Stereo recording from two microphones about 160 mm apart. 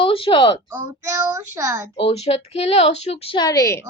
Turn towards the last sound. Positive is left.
turn(degrees=20)  # may be behind; listen again after turning